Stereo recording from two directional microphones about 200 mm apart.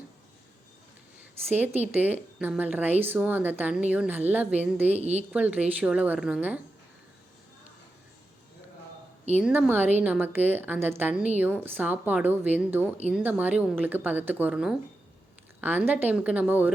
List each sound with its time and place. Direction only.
1.5 s speech: 10° right (ahead or behind)
4.9 s a woman's voice: 35° right (ahead or behind)
5.3 s speech: 10° right (ahead or behind)
9.3 s speech: 10° right (ahead or behind)
15.9 s speech: 10° right (ahead or behind)